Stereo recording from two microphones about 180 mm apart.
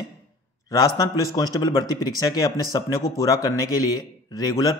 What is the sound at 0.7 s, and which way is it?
A man's voice, 20° left (ahead or behind).